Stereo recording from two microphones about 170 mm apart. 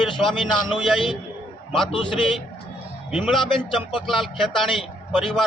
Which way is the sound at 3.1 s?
5° right (ahead or behind).